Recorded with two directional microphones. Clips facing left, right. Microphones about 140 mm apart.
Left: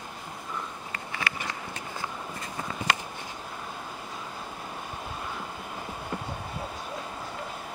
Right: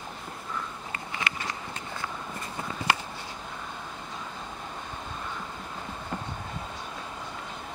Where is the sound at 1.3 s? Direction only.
20° right (ahead or behind).